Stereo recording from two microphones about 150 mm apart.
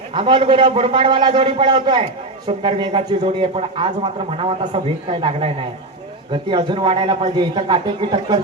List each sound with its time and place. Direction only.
0.1 s a man's voice: 35° right (ahead or behind)